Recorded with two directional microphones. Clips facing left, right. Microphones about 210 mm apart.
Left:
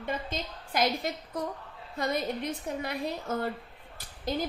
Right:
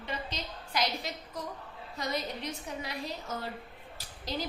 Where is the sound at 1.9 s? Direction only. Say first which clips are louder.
Left 5 dB; 55° left (ahead or behind).